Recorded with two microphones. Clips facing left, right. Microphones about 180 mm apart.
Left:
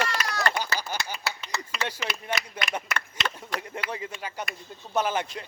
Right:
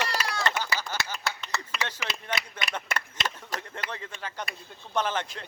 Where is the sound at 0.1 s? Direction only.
30° right (ahead or behind).